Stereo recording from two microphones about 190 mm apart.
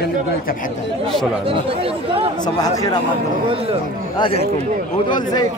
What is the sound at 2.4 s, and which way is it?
Speech, 20° left (ahead or behind).